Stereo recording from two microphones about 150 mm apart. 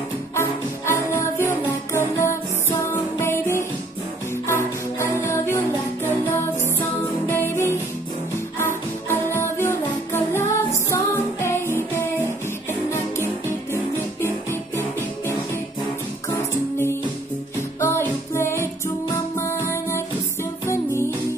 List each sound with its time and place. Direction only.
0.4 s music: 15° left (ahead or behind)
7.2 s music: 15° left (ahead or behind)
14.2 s music: 15° left (ahead or behind)